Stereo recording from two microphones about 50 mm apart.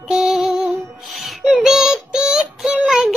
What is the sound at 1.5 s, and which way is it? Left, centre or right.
Synthetic singing, centre.